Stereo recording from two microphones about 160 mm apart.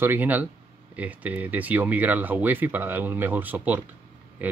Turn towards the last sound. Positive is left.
turn(degrees=-10)  # may be behind; listen again after turning